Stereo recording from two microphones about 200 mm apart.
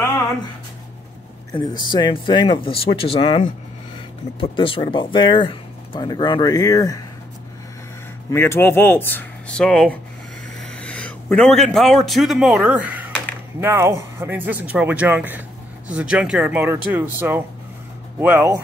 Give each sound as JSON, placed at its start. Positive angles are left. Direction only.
{"t": 1.7, "sound": "speech", "side_deg": 20}
{"t": 8.3, "sound": "a man's voice", "side_deg": 10}